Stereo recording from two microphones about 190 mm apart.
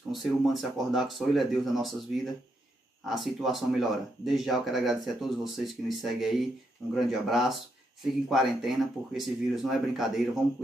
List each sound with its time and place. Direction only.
0.1 s speech: centre (ahead or behind)